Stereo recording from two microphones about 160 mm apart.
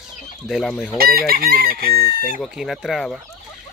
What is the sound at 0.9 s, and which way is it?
Chicken, 70° right (ahead or behind).